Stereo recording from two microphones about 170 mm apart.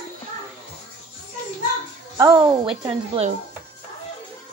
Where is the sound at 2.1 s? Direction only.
25° right (ahead or behind).